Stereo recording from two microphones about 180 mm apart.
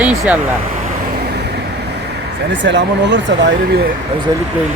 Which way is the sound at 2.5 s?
80° right.